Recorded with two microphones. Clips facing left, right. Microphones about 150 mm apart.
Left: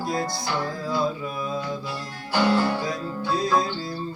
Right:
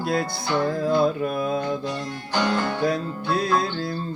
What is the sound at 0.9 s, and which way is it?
Mantra, 55° right (ahead or behind).